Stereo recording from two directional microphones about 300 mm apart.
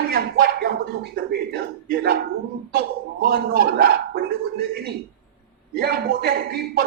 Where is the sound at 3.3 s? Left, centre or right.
Right.